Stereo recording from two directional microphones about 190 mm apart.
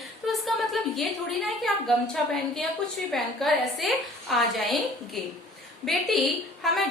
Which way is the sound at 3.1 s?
Centre (ahead or behind).